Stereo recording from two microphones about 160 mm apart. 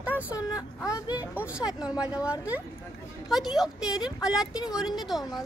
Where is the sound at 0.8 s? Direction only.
20° left (ahead or behind).